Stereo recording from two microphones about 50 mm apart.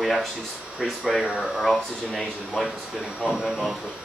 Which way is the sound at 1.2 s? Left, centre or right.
Right.